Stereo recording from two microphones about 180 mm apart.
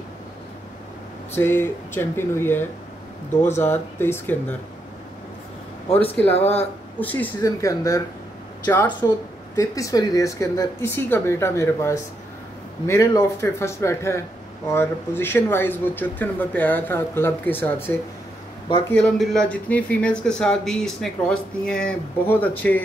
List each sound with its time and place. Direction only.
1.3 s speech: 10° left (ahead or behind)
6.2 s speech: 5° left (ahead or behind)